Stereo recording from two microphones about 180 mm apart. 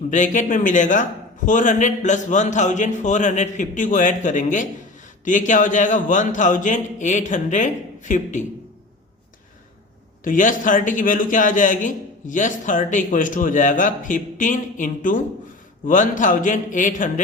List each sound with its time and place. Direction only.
0.1 s a man's voice: 45° left (ahead or behind)
10.2 s a man's voice: 45° left (ahead or behind)